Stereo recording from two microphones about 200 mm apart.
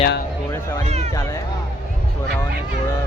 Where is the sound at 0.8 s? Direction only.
35° right (ahead or behind).